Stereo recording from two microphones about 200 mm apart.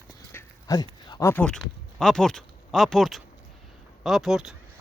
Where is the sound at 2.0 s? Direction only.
5° left (ahead or behind).